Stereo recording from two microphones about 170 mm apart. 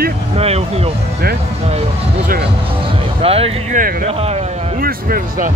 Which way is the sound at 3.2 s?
35° right (ahead or behind).